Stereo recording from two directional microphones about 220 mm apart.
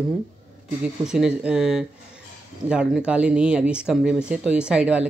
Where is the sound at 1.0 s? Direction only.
5° right (ahead or behind).